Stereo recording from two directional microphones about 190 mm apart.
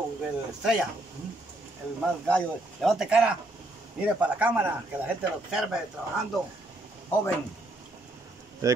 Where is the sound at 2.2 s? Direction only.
5° left (ahead or behind).